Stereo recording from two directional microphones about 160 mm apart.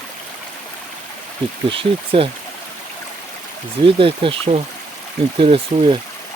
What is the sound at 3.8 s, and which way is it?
Speech, 35° right (ahead or behind).